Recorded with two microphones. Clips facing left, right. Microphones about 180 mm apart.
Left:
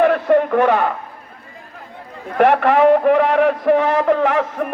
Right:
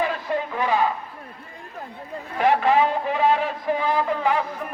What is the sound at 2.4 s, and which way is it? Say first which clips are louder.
A man's voice: left 6 dB; 65° left (ahead or behind).